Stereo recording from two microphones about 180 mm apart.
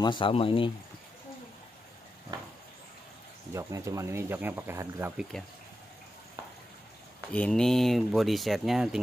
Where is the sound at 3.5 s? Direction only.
15° right (ahead or behind).